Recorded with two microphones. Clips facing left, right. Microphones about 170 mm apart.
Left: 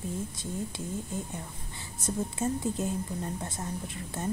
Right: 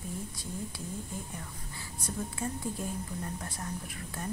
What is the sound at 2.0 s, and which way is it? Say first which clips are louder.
A woman's voice: left 5 dB; 25° left (ahead or behind).